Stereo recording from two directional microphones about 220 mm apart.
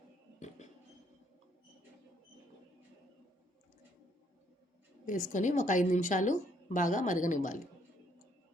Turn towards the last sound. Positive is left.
turn(degrees=35)  # may be behind; listen again after turning